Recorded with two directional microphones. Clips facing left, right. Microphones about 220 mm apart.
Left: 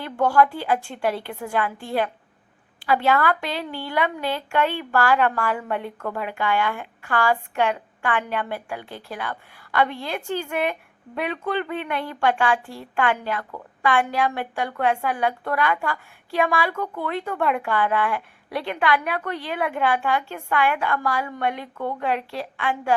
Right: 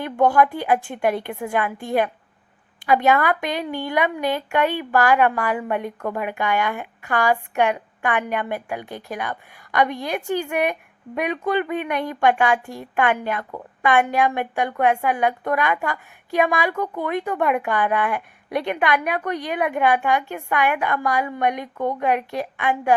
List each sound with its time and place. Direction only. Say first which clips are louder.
0.0 s a woman's voice: right 2 dB; 20° right (ahead or behind)